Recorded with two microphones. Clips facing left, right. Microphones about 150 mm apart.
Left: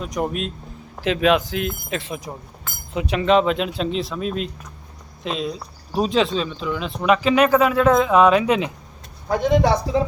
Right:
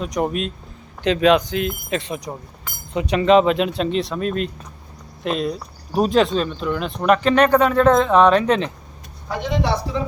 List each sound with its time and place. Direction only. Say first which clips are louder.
0.0 s speech: right 2 dB; centre (ahead or behind)
9.3 s speech: left 5 dB; 45° left (ahead or behind)